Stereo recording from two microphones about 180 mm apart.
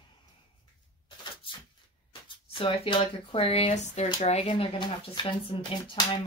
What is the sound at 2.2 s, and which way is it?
Speech, 30° left (ahead or behind).